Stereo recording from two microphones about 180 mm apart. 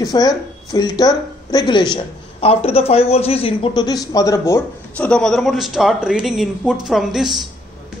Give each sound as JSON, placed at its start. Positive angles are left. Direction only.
{"t": 0.0, "sound": "a man's voice", "side_deg": 20}